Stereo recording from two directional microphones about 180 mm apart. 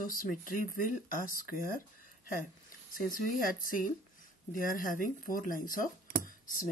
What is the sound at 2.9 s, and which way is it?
Speech, 50° left (ahead or behind).